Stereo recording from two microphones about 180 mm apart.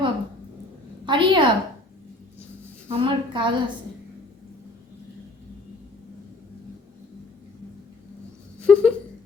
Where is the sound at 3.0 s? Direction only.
25° right (ahead or behind).